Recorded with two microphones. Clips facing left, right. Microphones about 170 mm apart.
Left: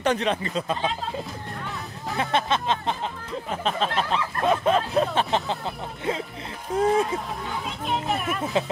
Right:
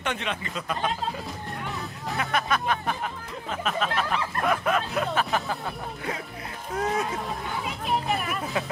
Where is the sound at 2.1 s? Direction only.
25° left (ahead or behind).